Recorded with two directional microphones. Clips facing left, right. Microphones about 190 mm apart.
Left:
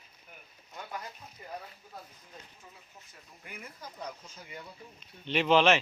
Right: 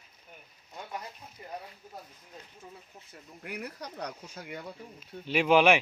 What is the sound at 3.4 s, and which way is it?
Speech, 75° right (ahead or behind).